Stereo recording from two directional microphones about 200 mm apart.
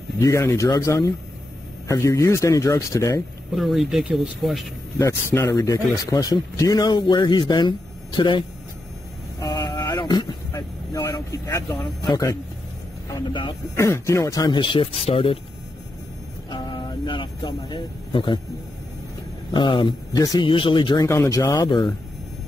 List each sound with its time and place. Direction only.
0.2 s speech: 15° left (ahead or behind)
3.5 s speech: centre (ahead or behind)
4.9 s speech: 10° left (ahead or behind)
9.4 s vehicle: 20° left (ahead or behind)
9.8 s speech: 20° left (ahead or behind)
16.4 s a sound: 25° left (ahead or behind)
19.5 s speech: 25° left (ahead or behind)